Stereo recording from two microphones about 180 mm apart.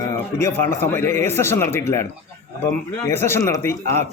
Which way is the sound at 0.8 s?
15° left (ahead or behind).